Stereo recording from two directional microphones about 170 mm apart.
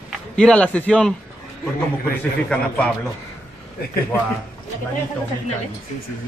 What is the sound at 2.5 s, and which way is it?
Speech, 5° left (ahead or behind).